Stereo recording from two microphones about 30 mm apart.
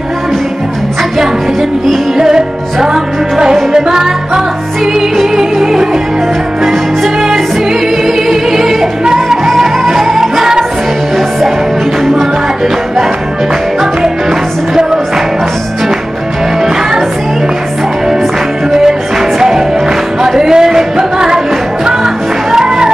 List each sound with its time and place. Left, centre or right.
2.1 s music: centre
5.3 s music: centre
8.3 s music: centre
9.6 s music: centre
20.3 s a sound: right
21.8 s music: centre